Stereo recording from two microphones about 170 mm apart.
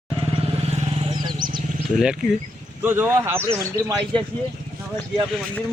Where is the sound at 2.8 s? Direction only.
10° right (ahead or behind).